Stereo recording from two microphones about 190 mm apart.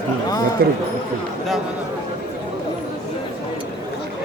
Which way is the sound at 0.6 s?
55° right (ahead or behind).